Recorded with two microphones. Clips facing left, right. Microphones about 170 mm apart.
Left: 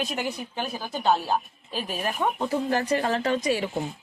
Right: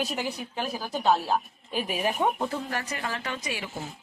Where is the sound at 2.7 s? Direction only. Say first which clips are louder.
Left 9 dB; 30° left (ahead or behind).